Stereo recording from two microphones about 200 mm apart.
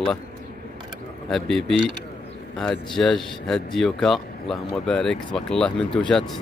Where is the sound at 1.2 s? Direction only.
Centre (ahead or behind).